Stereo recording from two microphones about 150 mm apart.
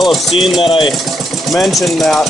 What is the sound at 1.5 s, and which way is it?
Speech, centre (ahead or behind).